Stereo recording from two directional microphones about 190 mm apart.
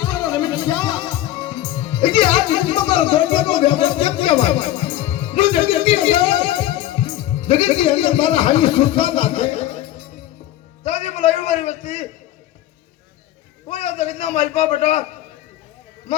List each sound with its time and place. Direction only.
0.0 s music: 15° left (ahead or behind); by 9.8 s 35° left (ahead or behind)
10.8 s a sound: 35° left (ahead or behind)
13.7 s a man's voice: 35° left (ahead or behind)